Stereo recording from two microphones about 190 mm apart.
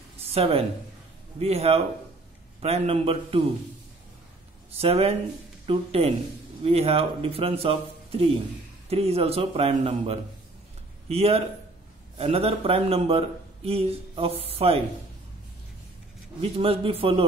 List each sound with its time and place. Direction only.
0.3 s a man's voice: 30° right (ahead or behind)
4.7 s a man's voice: 30° right (ahead or behind)
16.3 s a man's voice: 30° right (ahead or behind)